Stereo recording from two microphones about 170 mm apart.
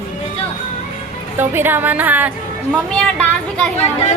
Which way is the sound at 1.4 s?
10° right (ahead or behind).